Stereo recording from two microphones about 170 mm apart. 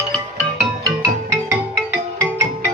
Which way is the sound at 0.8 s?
20° right (ahead or behind).